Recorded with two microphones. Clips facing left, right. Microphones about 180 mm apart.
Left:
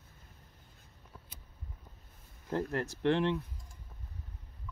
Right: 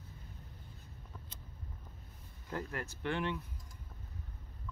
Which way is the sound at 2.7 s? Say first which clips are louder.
Left 9 dB; 35° left (ahead or behind).